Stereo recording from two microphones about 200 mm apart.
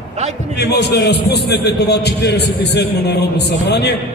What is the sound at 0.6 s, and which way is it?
A man's voice, 55° left (ahead or behind).